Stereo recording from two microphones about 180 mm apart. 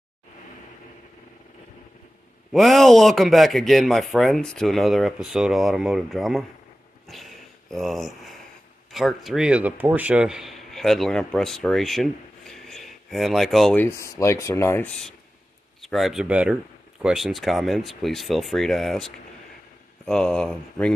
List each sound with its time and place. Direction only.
2.5 s speech: centre (ahead or behind)
7.1 s a sound: centre (ahead or behind)
8.9 s speech: centre (ahead or behind)
13.8 s speech: 15° left (ahead or behind)
15.8 s speech: centre (ahead or behind)
20.1 s speech: 5° left (ahead or behind)